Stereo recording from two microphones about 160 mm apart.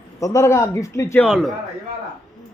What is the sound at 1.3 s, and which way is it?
Speech, centre (ahead or behind).